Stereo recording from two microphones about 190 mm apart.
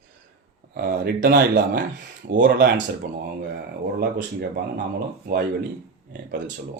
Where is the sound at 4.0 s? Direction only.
50° right (ahead or behind).